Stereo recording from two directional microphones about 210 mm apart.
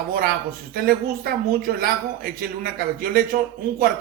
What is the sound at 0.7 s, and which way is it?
Speech, 45° right (ahead or behind).